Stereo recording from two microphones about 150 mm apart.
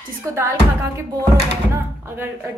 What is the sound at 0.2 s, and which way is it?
A woman's voice, 20° right (ahead or behind).